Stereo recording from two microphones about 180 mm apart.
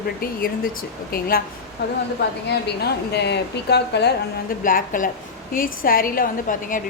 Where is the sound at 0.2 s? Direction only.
55° left (ahead or behind).